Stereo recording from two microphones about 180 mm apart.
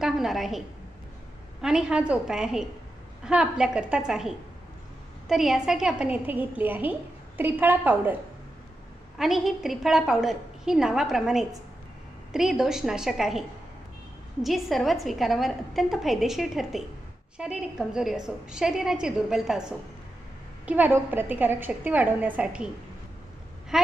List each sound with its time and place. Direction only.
0.0 s a woman's voice: centre (ahead or behind)
9.2 s a woman's voice: centre (ahead or behind)
14.4 s a woman's voice: centre (ahead or behind)
23.7 s speech: 5° right (ahead or behind)